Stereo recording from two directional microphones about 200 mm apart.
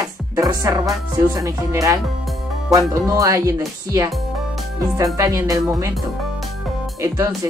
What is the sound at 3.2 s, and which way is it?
Speech, 15° right (ahead or behind).